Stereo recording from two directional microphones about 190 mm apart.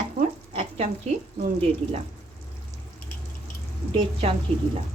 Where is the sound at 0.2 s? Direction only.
35° right (ahead or behind).